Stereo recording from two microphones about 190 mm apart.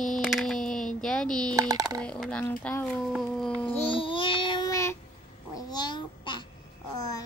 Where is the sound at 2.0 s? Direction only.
5° left (ahead or behind).